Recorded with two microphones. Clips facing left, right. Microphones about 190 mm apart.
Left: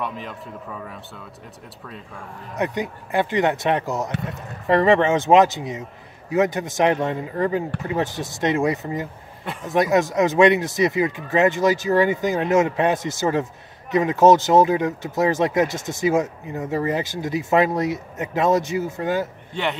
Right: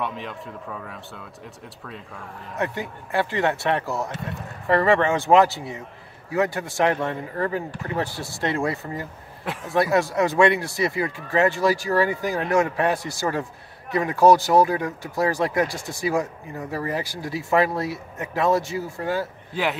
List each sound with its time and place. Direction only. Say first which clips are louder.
0.0 s a man's voice: even; centre (ahead or behind)
2.5 s speech: left 3 dB; 20° left (ahead or behind)
9.4 s speech: even; centre (ahead or behind)
9.7 s speech: left 2 dB; 20° left (ahead or behind)
19.5 s a man's voice: right 1 dB; 5° right (ahead or behind)